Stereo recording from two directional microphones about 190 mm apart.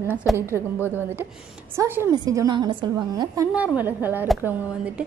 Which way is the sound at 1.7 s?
10° right (ahead or behind).